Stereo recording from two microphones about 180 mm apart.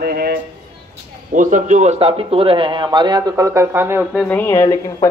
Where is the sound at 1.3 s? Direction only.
45° right (ahead or behind); by 4.1 s 15° right (ahead or behind).